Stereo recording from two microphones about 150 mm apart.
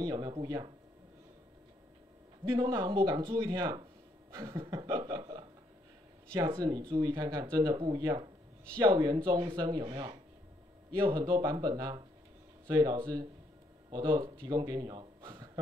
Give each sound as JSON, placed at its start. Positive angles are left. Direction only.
{"t": 0.0, "sound": "speech", "side_deg": -30}
{"t": 2.4, "sound": "speech", "side_deg": -25}
{"t": 4.7, "sound": "chuckle", "side_deg": -30}
{"t": 6.5, "sound": "a man's voice", "side_deg": -25}